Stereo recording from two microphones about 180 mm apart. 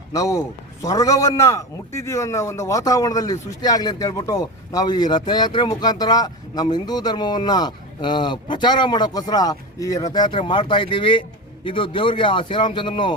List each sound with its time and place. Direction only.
0.1 s a man's voice: 20° left (ahead or behind)